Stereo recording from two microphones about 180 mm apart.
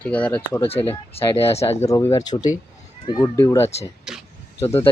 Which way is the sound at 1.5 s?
35° left (ahead or behind).